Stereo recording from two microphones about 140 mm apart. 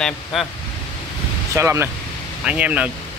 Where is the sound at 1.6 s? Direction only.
20° right (ahead or behind).